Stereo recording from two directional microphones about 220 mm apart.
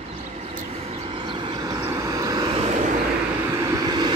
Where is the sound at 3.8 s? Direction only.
20° right (ahead or behind).